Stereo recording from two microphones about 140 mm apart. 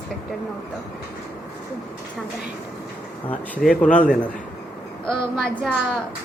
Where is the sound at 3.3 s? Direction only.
10° left (ahead or behind).